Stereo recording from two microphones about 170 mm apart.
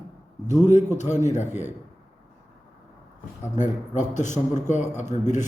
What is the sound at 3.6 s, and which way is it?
A man's voice, 45° left (ahead or behind).